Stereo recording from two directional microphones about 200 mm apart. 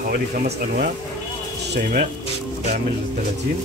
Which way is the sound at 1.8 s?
40° right (ahead or behind).